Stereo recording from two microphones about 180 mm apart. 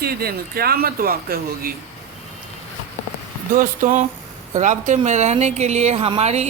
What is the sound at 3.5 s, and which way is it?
A woman's voice, 50° right (ahead or behind).